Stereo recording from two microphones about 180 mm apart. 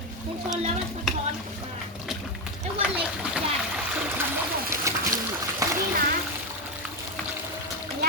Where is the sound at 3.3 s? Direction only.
5° right (ahead or behind).